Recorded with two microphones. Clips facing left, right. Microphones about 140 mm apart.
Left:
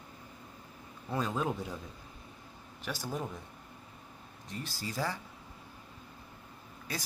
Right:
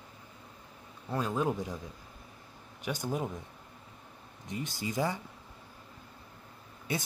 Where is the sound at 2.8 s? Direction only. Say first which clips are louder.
Right 4 dB; 15° right (ahead or behind).